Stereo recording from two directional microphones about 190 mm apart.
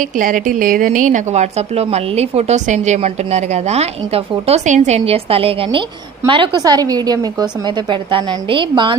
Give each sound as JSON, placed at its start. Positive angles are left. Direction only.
{"t": 0.0, "sound": "a woman's voice", "side_deg": -45}